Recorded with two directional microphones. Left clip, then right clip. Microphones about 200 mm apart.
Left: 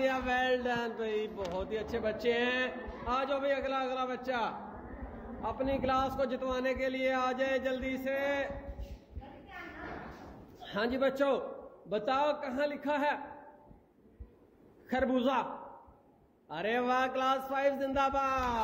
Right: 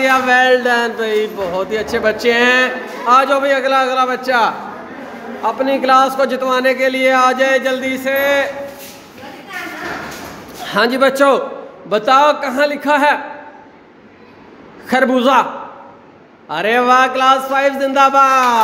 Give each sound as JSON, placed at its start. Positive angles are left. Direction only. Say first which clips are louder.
{"t": 0.0, "sound": "speech", "louder": "right 19 dB", "side_deg": 0}
{"t": 10.6, "sound": "speech", "louder": "right 19 dB", "side_deg": -5}
{"t": 14.9, "sound": "speech", "louder": "right 18 dB", "side_deg": 0}
{"t": 16.4, "sound": "speech", "louder": "right 19 dB", "side_deg": 0}